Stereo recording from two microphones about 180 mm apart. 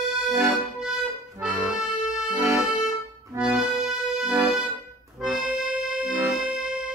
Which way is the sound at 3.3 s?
20° right (ahead or behind).